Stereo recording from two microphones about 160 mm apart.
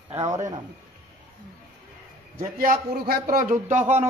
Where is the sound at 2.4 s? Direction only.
60° right (ahead or behind).